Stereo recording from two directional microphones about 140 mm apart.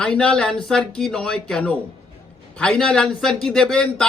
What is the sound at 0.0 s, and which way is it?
Speech, 5° left (ahead or behind).